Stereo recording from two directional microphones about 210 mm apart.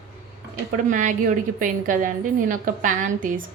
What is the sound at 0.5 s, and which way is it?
A woman's voice, 40° right (ahead or behind).